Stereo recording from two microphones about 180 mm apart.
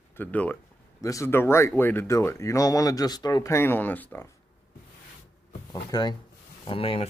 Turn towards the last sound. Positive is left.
turn(degrees=30)  # may be behind; listen again after turning